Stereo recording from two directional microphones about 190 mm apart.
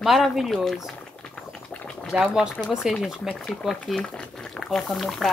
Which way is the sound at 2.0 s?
5° right (ahead or behind).